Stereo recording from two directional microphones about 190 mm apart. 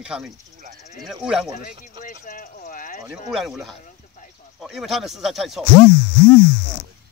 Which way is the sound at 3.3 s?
Centre (ahead or behind).